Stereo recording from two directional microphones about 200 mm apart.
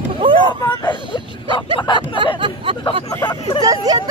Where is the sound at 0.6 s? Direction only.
20° left (ahead or behind).